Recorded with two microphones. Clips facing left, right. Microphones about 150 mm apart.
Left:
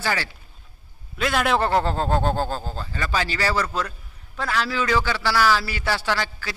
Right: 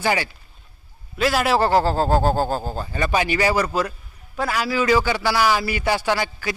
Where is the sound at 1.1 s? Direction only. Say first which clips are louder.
Right 3 dB; 5° right (ahead or behind).